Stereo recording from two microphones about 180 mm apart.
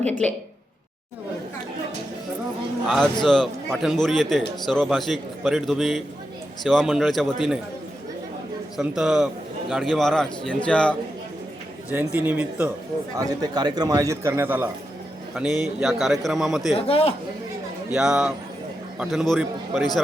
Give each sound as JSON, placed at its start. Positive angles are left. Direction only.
{"t": 2.8, "sound": "a man's voice", "side_deg": 0}
{"t": 8.8, "sound": "a man's voice", "side_deg": 0}
{"t": 11.9, "sound": "speech", "side_deg": -10}
{"t": 13.1, "sound": "a man's voice", "side_deg": -20}
{"t": 16.7, "sound": "a man's voice", "side_deg": 30}
{"t": 17.9, "sound": "a man's voice", "side_deg": -5}